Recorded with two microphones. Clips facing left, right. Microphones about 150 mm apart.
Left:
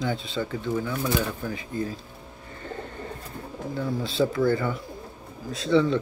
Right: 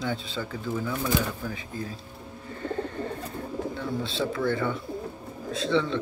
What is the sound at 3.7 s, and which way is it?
Speech, centre (ahead or behind).